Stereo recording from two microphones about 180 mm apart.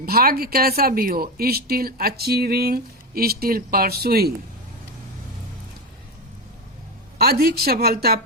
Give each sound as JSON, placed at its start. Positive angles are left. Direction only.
{"t": 0.0, "sound": "speech", "side_deg": -55}
{"t": 7.2, "sound": "speech", "side_deg": -60}